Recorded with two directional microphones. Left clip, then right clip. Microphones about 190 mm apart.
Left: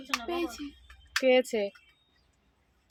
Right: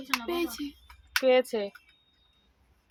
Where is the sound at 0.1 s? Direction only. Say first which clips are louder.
Right 2 dB; 45° right (ahead or behind).